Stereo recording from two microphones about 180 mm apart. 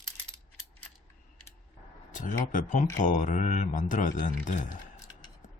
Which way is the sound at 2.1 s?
45° left (ahead or behind).